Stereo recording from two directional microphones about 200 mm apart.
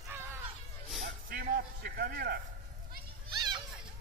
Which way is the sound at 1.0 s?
50° right (ahead or behind).